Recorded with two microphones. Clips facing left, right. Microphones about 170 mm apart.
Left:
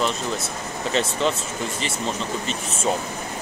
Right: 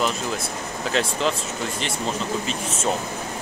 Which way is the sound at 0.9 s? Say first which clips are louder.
Even; centre (ahead or behind).